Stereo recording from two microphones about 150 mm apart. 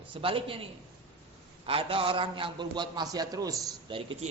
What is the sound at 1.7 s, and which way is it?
A man's voice, 40° right (ahead or behind).